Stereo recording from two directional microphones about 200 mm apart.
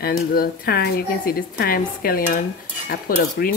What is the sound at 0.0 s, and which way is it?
A woman's voice, 50° left (ahead or behind).